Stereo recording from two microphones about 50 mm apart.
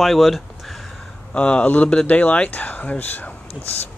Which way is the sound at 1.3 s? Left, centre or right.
Left.